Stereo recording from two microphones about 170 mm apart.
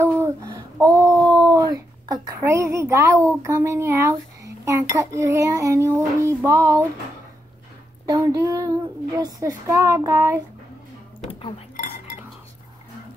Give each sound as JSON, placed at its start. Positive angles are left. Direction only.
{"t": 0.0, "sound": "a sound", "side_deg": -15}
{"t": 3.3, "sound": "speech", "side_deg": -15}
{"t": 8.1, "sound": "child singing", "side_deg": -20}
{"t": 9.1, "sound": "speech", "side_deg": -20}